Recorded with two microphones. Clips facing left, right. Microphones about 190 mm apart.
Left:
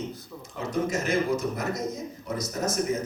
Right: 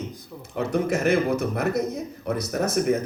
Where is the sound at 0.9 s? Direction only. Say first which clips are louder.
Right 5 dB; 60° right (ahead or behind).